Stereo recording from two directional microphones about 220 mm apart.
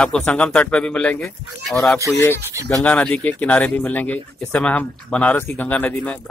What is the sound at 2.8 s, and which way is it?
Speech, 5° left (ahead or behind).